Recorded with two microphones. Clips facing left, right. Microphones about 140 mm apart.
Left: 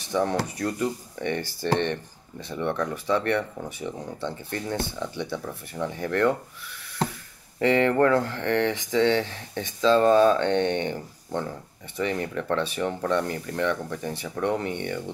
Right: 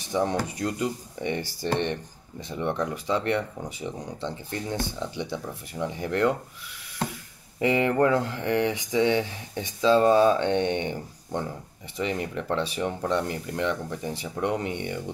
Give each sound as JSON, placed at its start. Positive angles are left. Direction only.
{"t": 0.0, "sound": "speech", "side_deg": -15}
{"t": 7.5, "sound": "speech", "side_deg": -15}